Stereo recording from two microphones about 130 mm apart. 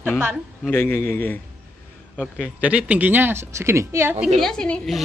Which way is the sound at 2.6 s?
10° right (ahead or behind).